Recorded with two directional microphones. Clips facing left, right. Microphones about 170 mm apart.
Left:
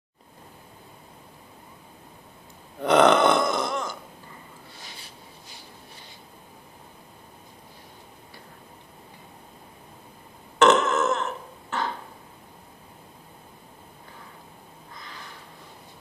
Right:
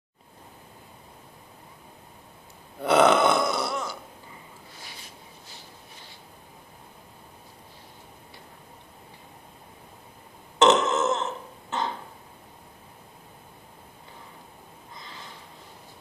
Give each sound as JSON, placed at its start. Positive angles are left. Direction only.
{"t": 2.8, "sound": "burping", "side_deg": -5}
{"t": 10.6, "sound": "burping", "side_deg": -20}
{"t": 15.0, "sound": "a sound", "side_deg": -20}